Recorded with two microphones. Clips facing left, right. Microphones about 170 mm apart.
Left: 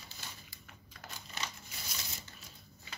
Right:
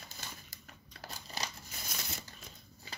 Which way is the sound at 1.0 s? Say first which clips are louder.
Right 2 dB; 35° right (ahead or behind).